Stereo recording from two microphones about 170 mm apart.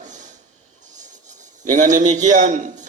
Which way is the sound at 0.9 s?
45° right (ahead or behind).